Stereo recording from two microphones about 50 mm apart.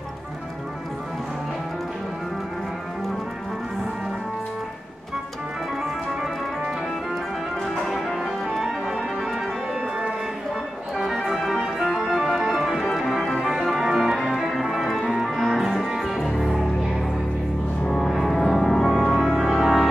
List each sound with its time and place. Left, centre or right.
7.6 s music: centre
8.5 s music: centre
9.8 s music: right
11.0 s organ: centre
14.3 s music: centre
17.8 s music: centre
18.1 s organ: centre